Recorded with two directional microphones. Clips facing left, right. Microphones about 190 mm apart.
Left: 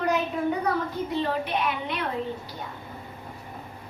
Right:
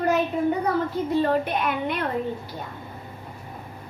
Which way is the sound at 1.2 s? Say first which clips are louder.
Right 3 dB; 50° right (ahead or behind).